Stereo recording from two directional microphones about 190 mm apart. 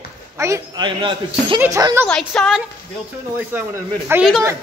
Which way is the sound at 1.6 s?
15° right (ahead or behind).